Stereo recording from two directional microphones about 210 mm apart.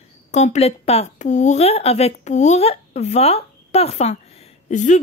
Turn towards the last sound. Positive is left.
turn(degrees=35)  # may be behind; listen again after turning